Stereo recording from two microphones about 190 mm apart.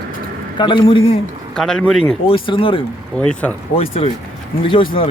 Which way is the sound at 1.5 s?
Centre (ahead or behind).